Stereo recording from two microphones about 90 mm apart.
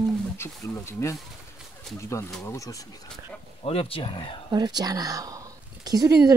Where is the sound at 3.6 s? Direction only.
90° left.